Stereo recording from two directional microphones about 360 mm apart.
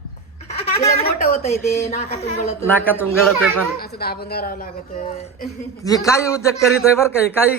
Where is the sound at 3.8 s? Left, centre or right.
Left; by 7.5 s centre.